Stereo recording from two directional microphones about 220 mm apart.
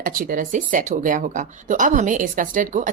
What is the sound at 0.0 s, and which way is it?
Speech, 40° right (ahead or behind).